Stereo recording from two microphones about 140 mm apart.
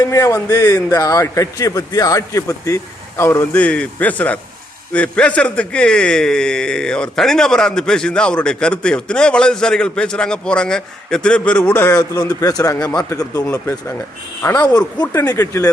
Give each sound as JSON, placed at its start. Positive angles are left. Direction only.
{"t": 0.0, "sound": "a man's voice", "side_deg": 25}
{"t": 11.9, "sound": "a man's voice", "side_deg": 25}